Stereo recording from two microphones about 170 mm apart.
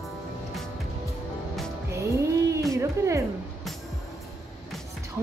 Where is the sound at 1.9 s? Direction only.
15° right (ahead or behind).